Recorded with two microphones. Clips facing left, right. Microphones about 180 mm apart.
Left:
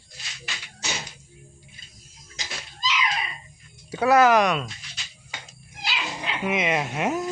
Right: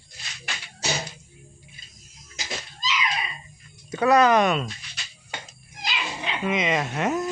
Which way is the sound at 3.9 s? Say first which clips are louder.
Even; 5° left (ahead or behind).